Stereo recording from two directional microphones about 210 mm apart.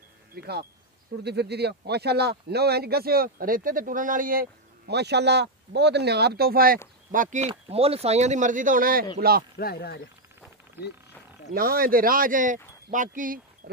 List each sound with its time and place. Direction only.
0.3 s speech: 50° right (ahead or behind)
9.6 s speech: 50° left (ahead or behind)
11.5 s speech: 45° right (ahead or behind)